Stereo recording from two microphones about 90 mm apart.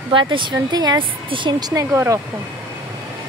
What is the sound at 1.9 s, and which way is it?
Speech, 25° right (ahead or behind).